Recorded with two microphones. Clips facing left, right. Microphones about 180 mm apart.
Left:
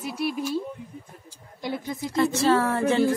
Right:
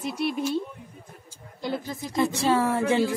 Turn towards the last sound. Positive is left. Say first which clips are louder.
# left 1 dB
turn(degrees=-15)  # may be behind; listen again after turning